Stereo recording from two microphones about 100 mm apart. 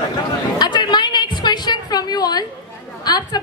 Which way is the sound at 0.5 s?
45° left (ahead or behind).